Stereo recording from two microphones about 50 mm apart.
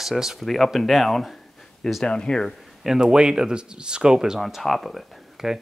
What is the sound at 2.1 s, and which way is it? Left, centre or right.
Speech, centre.